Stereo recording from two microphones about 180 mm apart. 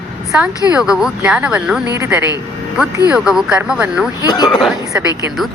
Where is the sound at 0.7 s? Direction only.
5° right (ahead or behind).